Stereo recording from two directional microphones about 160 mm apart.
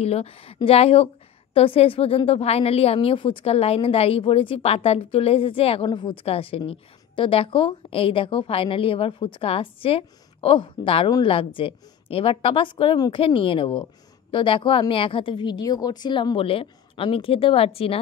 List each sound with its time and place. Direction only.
0.0 s a woman's voice: 40° left (ahead or behind)